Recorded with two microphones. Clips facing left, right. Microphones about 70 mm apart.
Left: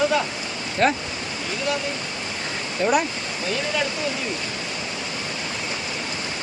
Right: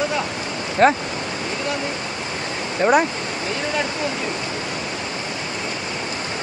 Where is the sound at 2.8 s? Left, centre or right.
Right.